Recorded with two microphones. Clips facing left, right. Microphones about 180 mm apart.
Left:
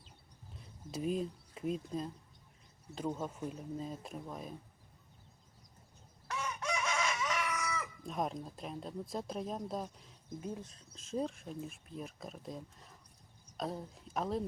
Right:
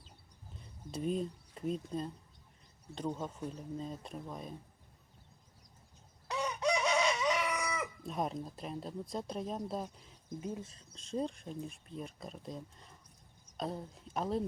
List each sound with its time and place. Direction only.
0.5 s speech: centre (ahead or behind)
6.2 s chicken: 15° right (ahead or behind)
8.0 s speech: centre (ahead or behind)